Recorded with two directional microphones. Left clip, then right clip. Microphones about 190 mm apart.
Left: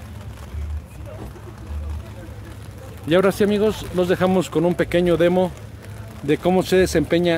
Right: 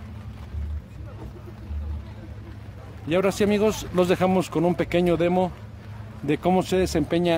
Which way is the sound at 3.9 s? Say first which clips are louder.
Left 1 dB; 10° right (ahead or behind).